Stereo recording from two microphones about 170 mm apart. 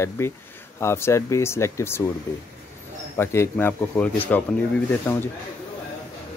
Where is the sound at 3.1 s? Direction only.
15° left (ahead or behind).